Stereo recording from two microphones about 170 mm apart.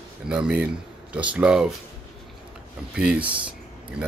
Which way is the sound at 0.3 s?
5° right (ahead or behind).